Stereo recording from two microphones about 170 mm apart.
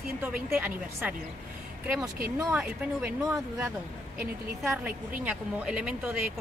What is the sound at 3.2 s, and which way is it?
A woman's voice, 20° right (ahead or behind).